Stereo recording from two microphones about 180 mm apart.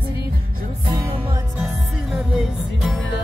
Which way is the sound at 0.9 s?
15° right (ahead or behind).